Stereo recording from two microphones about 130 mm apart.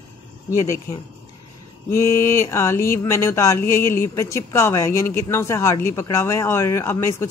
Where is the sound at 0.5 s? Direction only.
25° left (ahead or behind).